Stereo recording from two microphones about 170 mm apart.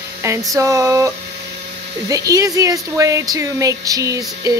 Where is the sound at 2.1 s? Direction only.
20° right (ahead or behind).